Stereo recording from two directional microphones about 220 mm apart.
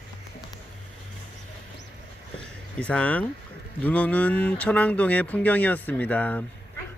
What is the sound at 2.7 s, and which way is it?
Speech, 5° left (ahead or behind).